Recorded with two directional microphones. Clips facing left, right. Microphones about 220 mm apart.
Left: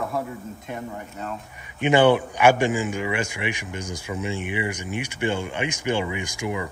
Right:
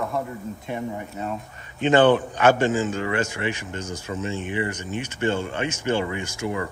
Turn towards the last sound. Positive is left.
turn(degrees=15)  # may be behind; listen again after turning